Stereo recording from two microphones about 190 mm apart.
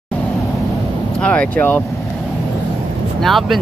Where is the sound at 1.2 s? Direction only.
5° left (ahead or behind).